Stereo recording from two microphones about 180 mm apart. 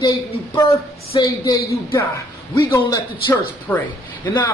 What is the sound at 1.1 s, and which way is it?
A man's voice, 20° left (ahead or behind).